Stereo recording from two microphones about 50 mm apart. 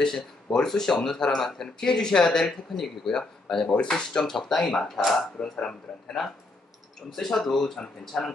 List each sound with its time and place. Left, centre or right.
0.0 s speech: centre
3.6 s speech: left
4.8 s speech: centre
5.4 s speech: centre
7.1 s speech: centre